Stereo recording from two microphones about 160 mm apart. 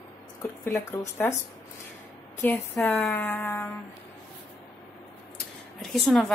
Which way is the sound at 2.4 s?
15° left (ahead or behind).